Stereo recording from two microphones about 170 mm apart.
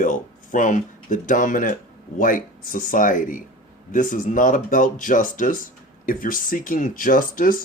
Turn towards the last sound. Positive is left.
turn(degrees=55)  # may be behind; listen again after turning